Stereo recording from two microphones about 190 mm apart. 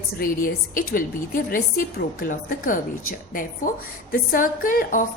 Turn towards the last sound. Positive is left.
turn(degrees=45)  # may be behind; listen again after turning